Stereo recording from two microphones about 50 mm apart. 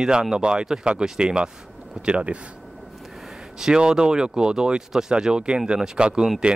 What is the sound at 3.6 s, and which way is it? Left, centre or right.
A man's voice, centre.